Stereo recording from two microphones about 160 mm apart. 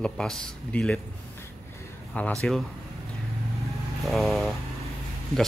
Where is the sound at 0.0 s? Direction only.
5° left (ahead or behind).